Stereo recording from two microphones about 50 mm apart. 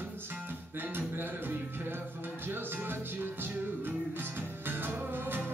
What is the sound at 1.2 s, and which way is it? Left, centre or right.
Music, right.